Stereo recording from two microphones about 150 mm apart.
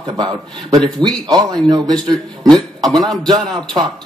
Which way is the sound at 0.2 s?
30° right (ahead or behind).